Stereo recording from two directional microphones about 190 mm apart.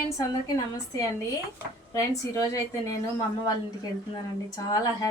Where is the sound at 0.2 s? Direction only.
20° left (ahead or behind).